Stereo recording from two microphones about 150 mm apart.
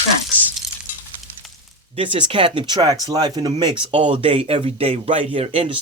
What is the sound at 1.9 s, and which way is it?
Speech, 35° right (ahead or behind).